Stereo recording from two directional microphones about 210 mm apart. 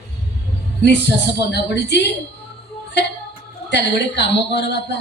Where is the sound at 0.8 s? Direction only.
55° left (ahead or behind).